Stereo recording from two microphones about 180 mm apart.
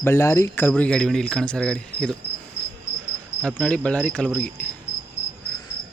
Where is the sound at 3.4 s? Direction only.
5° left (ahead or behind).